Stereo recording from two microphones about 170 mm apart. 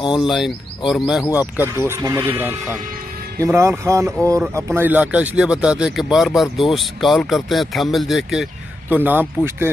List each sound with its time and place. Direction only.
0.0 s speech: 30° left (ahead or behind)
0.3 s speech: centre (ahead or behind)
1.6 s speech: 15° right (ahead or behind)
3.3 s speech: 15° right (ahead or behind)